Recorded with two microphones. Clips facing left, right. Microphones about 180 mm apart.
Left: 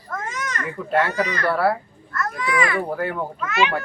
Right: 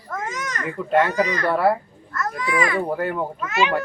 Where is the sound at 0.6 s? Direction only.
15° right (ahead or behind).